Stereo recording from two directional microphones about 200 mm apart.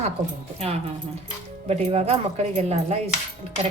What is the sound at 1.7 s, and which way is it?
Speech, 30° right (ahead or behind).